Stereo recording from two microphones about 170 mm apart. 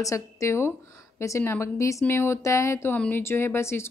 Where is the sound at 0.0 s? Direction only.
15° left (ahead or behind).